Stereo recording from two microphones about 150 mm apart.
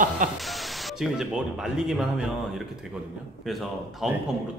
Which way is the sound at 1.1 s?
5° right (ahead or behind).